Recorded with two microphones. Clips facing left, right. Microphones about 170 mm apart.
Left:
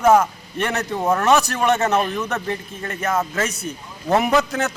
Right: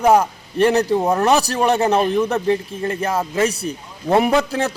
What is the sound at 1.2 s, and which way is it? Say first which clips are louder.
A man's voice: right 1 dB; 35° right (ahead or behind).